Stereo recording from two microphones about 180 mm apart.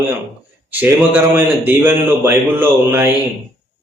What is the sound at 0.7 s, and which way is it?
Speech, 10° right (ahead or behind).